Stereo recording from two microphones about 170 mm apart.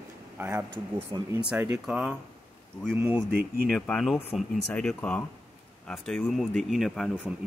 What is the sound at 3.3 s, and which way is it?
Speech, 65° right (ahead or behind).